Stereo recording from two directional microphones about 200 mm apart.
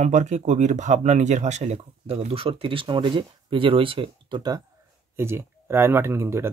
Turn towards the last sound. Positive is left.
turn(degrees=-10)  # may be behind; listen again after turning